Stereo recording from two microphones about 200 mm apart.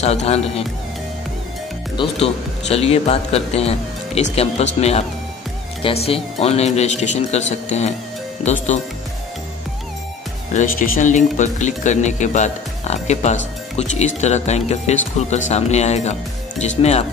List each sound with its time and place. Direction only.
0.0 s speech: 30° left (ahead or behind)
2.0 s speech: 30° left (ahead or behind)
10.5 s speech: 40° left (ahead or behind)